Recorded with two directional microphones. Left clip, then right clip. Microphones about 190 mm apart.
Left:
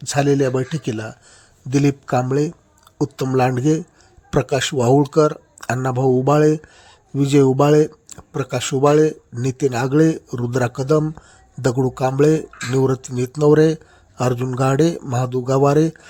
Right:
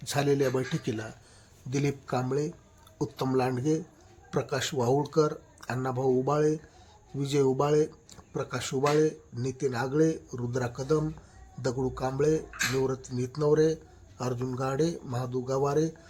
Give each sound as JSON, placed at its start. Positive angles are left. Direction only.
{"t": 0.0, "sound": "speech", "side_deg": 35}